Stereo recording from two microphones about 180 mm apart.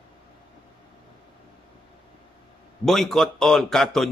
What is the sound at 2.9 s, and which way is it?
Speech, centre (ahead or behind).